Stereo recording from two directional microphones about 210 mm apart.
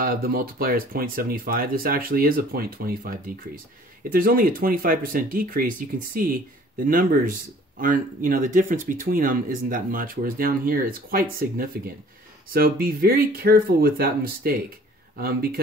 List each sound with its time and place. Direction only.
0.0 s speech: 45° right (ahead or behind)